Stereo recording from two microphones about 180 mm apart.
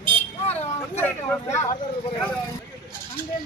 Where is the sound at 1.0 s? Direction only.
10° left (ahead or behind).